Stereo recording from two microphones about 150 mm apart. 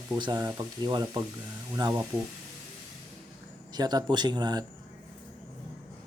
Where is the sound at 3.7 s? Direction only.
25° right (ahead or behind).